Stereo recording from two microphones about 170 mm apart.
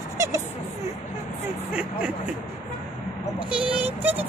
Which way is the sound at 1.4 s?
5° right (ahead or behind).